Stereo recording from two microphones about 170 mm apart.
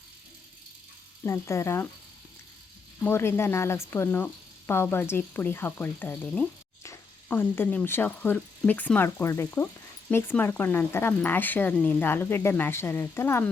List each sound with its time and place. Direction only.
1.2 s speech: 15° left (ahead or behind)
3.0 s speech: 15° left (ahead or behind)